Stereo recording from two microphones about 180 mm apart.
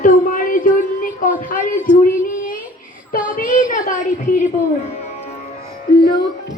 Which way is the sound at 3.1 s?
50° left (ahead or behind).